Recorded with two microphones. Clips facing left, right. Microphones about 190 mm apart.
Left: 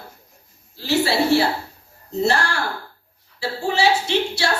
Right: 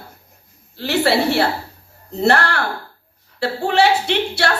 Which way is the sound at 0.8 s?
60° right (ahead or behind).